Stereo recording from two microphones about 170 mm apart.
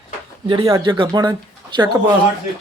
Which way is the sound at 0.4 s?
30° right (ahead or behind).